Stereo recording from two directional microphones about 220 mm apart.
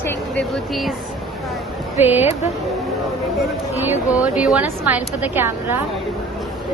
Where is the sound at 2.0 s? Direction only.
10° right (ahead or behind).